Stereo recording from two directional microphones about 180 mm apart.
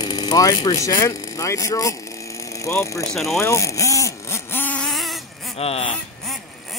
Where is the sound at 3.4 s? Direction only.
15° left (ahead or behind).